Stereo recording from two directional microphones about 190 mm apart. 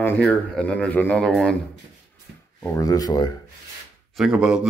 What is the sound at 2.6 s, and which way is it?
Speech, 20° left (ahead or behind).